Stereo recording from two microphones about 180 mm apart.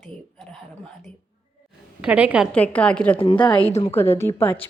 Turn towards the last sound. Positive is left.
turn(degrees=10)  # may be behind; listen again after turning